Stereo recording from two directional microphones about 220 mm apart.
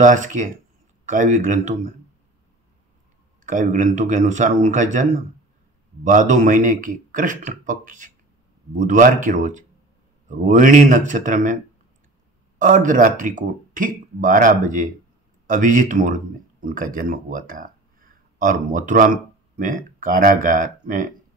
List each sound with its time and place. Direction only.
0.0 s speech: 35° right (ahead or behind)
3.4 s speech: 35° right (ahead or behind)
12.5 s speech: 35° right (ahead or behind)